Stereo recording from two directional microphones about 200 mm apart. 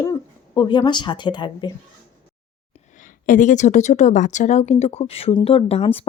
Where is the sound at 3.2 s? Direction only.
40° left (ahead or behind).